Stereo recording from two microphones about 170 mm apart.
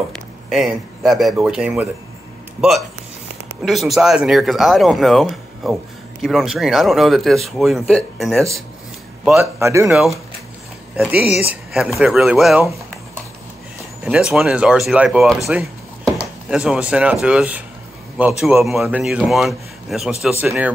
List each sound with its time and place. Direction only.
0.1 s speech: centre (ahead or behind)
3.6 s speech: centre (ahead or behind)
9.4 s speech: 15° right (ahead or behind)
9.8 s speech: 5° right (ahead or behind)
14.0 s speech: 5° right (ahead or behind)